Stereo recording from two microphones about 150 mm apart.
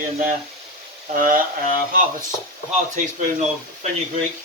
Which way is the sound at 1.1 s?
65° right (ahead or behind).